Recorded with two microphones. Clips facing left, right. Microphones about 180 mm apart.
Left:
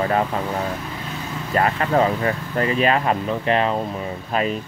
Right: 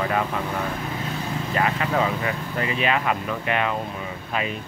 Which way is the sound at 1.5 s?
45° left (ahead or behind).